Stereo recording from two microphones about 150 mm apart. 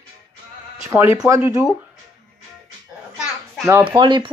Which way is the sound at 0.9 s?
15° right (ahead or behind).